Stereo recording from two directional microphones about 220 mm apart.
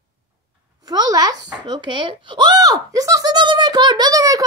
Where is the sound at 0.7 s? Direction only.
20° right (ahead or behind).